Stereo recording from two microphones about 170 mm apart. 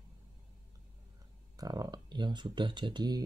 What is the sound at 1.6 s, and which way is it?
Speech, 20° right (ahead or behind).